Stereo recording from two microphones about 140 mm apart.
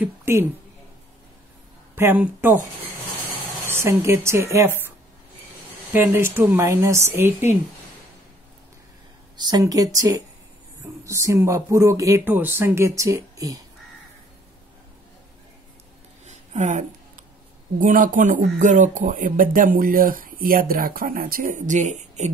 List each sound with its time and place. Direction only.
0.0 s a sound: 15° right (ahead or behind)
2.0 s speech: 15° right (ahead or behind)
3.6 s speech: 20° right (ahead or behind)
6.1 s a woman's voice: 15° right (ahead or behind)
9.4 s speech: 30° right (ahead or behind)
16.3 s a sound: 60° right (ahead or behind)
17.7 s speech: 70° right (ahead or behind); by 22.3 s 55° right (ahead or behind)